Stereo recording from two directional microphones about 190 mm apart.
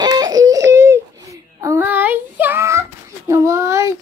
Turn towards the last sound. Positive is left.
turn(degrees=-15)  # may be behind; listen again after turning